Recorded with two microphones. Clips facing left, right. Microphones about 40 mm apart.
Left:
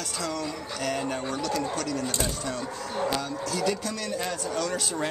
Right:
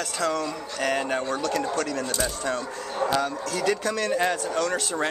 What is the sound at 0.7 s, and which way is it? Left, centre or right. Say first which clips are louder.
Speech: right 5 dB; right.